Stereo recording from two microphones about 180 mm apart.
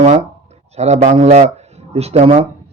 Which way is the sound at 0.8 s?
40° right (ahead or behind).